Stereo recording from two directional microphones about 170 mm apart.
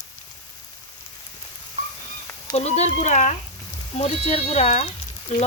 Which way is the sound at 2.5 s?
40° left (ahead or behind).